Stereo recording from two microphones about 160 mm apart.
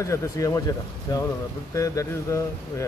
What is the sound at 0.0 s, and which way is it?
Speech, 20° left (ahead or behind).